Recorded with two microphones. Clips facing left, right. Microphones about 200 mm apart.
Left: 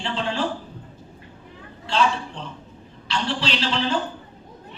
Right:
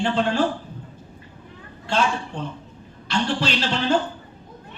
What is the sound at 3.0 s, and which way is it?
Speech, 50° right (ahead or behind).